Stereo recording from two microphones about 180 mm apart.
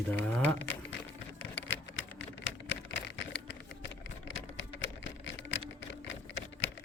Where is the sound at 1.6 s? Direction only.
90° left.